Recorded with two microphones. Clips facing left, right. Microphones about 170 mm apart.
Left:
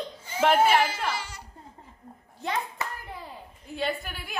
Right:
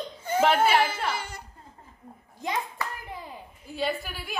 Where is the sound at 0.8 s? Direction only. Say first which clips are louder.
Right 1 dB; 55° right (ahead or behind).